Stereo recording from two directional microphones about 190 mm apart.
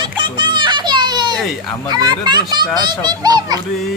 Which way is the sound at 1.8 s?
25° right (ahead or behind).